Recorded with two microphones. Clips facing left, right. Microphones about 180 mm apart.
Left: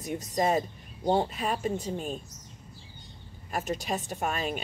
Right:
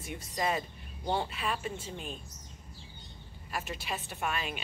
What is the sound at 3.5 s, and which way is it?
A woman's voice, 45° left (ahead or behind).